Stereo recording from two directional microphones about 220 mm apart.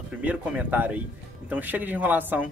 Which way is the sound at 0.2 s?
5° right (ahead or behind).